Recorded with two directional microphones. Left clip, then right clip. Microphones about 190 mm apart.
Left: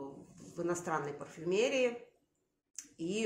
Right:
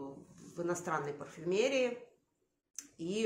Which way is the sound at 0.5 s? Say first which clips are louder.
Even; centre (ahead or behind).